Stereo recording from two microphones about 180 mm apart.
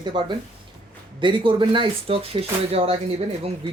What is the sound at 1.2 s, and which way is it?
Speech, 25° right (ahead or behind).